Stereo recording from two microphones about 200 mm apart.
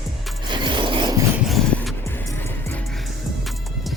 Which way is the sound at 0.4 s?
25° right (ahead or behind).